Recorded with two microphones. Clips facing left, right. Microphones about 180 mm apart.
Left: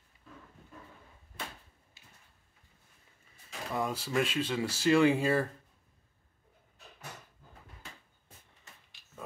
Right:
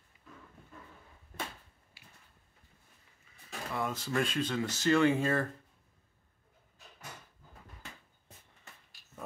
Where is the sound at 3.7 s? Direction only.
10° left (ahead or behind).